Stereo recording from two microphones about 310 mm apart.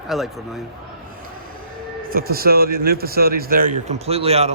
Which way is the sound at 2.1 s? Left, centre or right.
Right.